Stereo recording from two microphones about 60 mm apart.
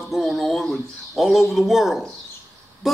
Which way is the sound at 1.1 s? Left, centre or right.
Centre.